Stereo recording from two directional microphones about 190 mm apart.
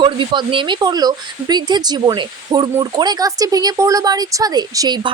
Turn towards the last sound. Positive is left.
turn(degrees=-20)  # may be behind; listen again after turning